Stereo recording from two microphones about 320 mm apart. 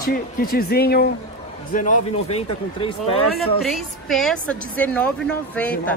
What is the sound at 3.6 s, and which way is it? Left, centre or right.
A woman's voice, centre.